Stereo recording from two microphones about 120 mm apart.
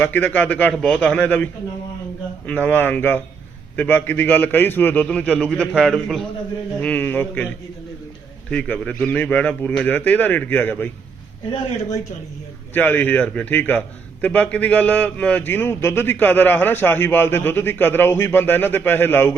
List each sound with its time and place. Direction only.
0.0 s a man's voice: 15° left (ahead or behind)
2.5 s a man's voice: 15° left (ahead or behind)
6.8 s a man's voice: 15° left (ahead or behind)
12.7 s a man's voice: 15° left (ahead or behind)